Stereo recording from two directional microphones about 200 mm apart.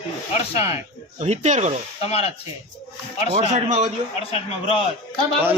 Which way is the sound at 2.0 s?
30° left (ahead or behind).